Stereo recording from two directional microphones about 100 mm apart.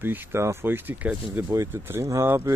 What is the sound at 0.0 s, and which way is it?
Speech, 20° right (ahead or behind).